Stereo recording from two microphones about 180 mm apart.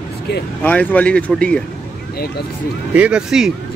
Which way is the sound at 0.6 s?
10° left (ahead or behind).